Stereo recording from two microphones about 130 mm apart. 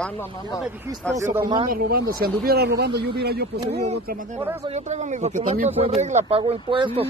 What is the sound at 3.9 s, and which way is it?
Speech, 70° right (ahead or behind).